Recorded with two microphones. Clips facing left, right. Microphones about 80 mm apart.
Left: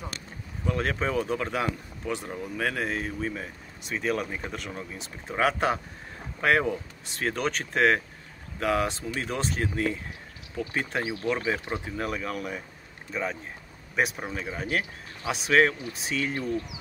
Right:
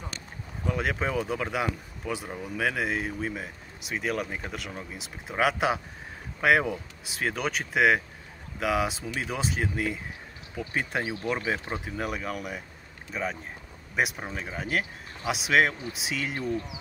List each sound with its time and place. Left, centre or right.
0.7 s speech: centre
11.0 s speech: right
11.2 s speech: centre
16.3 s speech: right